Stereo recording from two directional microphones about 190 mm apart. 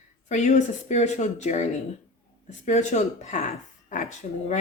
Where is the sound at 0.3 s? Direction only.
40° left (ahead or behind).